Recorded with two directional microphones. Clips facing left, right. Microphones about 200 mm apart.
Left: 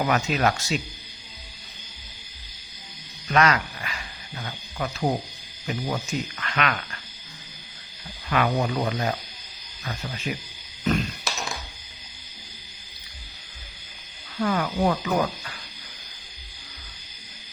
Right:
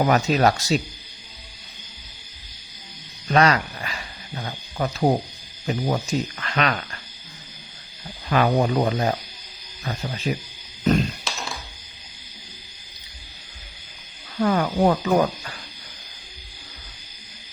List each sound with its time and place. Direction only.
0.0 s speech: 35° right (ahead or behind)
3.2 s dog: 35° right (ahead or behind)
5.6 s speech: 35° right (ahead or behind)
8.3 s speech: 35° right (ahead or behind)
10.9 s a sound: 35° right (ahead or behind)
14.3 s speech: 35° right (ahead or behind)